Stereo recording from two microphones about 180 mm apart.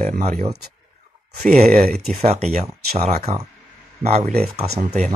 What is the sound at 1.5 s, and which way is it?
Speech, 40° right (ahead or behind).